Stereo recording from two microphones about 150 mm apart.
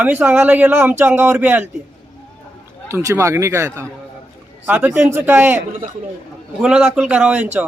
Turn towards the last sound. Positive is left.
turn(degrees=-10)  # may be behind; listen again after turning